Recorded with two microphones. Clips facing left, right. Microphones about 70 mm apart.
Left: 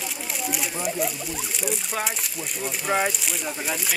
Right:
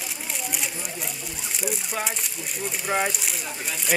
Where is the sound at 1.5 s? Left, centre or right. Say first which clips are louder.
Even; centre.